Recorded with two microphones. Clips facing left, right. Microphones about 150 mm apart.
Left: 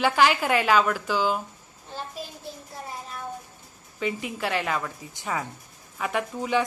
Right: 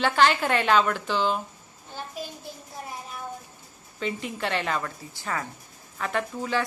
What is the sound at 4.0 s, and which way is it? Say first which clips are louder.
Speech: left 1 dB; 5° left (ahead or behind).